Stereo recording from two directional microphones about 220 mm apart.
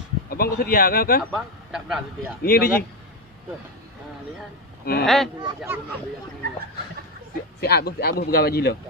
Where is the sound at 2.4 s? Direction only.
45° left (ahead or behind).